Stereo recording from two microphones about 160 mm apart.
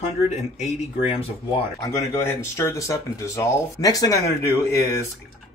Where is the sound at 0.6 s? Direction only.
40° left (ahead or behind).